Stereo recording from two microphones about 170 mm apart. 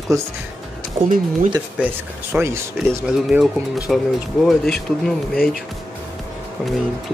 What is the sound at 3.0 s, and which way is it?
Speech, 5° right (ahead or behind).